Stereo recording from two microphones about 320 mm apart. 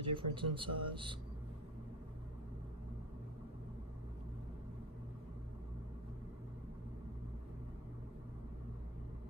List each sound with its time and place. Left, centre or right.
0.0 s speech: centre